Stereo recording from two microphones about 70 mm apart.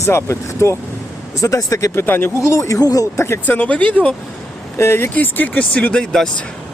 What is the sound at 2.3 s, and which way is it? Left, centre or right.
Speech, left.